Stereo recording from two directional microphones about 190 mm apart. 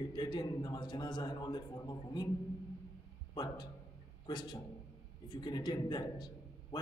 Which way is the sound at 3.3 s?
25° left (ahead or behind).